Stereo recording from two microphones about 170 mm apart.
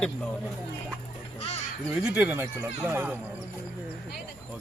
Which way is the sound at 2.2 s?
10° right (ahead or behind).